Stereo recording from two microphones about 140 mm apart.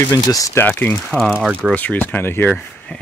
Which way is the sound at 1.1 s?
Centre (ahead or behind).